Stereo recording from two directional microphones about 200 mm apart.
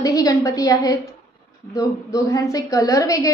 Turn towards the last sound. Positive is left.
turn(degrees=15)  # may be behind; listen again after turning